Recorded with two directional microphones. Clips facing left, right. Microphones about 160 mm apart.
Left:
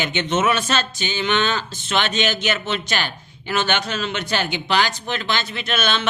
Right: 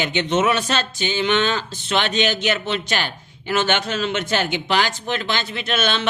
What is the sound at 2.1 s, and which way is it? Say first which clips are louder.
Speech: right 2 dB; 45° left (ahead or behind).